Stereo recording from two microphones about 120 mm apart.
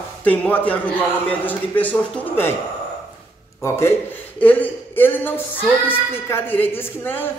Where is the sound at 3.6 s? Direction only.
20° left (ahead or behind).